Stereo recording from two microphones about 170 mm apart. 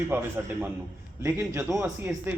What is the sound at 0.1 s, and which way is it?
A man's voice, 15° right (ahead or behind).